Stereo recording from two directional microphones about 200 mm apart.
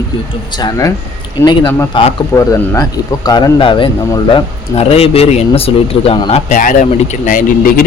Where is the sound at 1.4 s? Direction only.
20° left (ahead or behind).